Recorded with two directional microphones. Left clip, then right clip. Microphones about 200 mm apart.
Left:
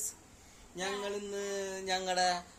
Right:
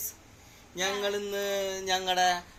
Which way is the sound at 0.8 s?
Centre (ahead or behind).